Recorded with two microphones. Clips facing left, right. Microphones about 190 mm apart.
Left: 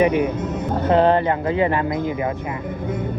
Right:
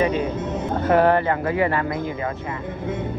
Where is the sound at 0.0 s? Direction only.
15° left (ahead or behind).